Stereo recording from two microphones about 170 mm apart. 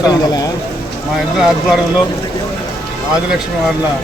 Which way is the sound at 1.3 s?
5° right (ahead or behind).